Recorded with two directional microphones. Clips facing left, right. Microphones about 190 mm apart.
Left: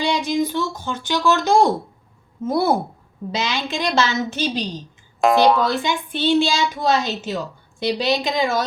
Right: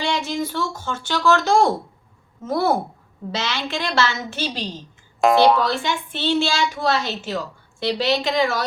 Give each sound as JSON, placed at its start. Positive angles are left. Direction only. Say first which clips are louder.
{"t": 0.0, "sound": "a sound", "louder": "left 4 dB", "side_deg": 15}
{"t": 0.8, "sound": "speech", "louder": "left 2 dB", "side_deg": 15}
{"t": 5.2, "sound": "speech", "louder": "even", "side_deg": 0}
{"t": 5.6, "sound": "speech", "louder": "left 2 dB", "side_deg": 15}